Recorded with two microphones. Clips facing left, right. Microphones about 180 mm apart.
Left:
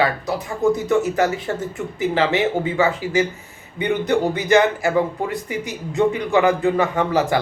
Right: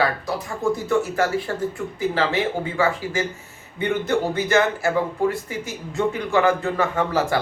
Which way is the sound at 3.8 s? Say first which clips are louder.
Left 3 dB; 15° left (ahead or behind).